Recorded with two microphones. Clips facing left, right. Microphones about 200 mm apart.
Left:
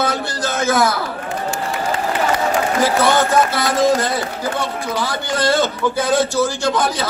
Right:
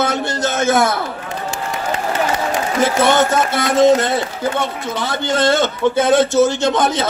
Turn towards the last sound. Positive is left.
turn(degrees=-25)  # may be behind; listen again after turning